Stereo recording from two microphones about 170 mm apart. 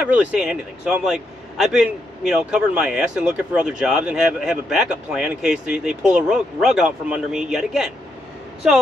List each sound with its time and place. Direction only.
0.0 s a man's voice: 5° right (ahead or behind)